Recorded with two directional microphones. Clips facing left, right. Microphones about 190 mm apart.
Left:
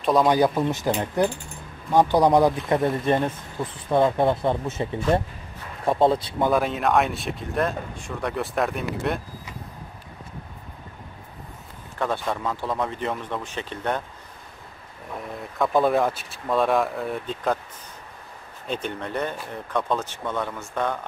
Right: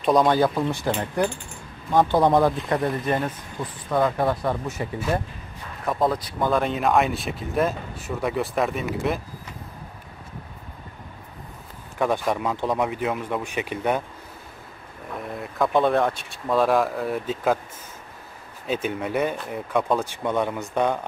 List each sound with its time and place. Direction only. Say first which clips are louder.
0.0 s speech: right 1 dB; centre (ahead or behind)
0.3 s speech: left 1 dB; 15° left (ahead or behind)
3.1 s speech: left 3 dB; 25° left (ahead or behind)
6.5 s speech: right 1 dB; centre (ahead or behind)
12.0 s speech: right 3 dB; 15° right (ahead or behind)
15.2 s speech: right 1 dB; centre (ahead or behind)
18.7 s speech: right 4 dB; 5° right (ahead or behind)